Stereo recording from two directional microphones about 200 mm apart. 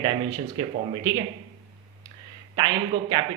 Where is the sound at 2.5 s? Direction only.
25° right (ahead or behind).